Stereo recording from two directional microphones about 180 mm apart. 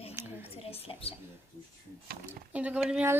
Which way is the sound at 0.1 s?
10° right (ahead or behind).